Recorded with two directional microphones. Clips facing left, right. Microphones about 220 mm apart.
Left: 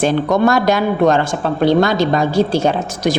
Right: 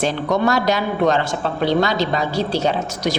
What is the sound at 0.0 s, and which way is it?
Speech, 50° left (ahead or behind).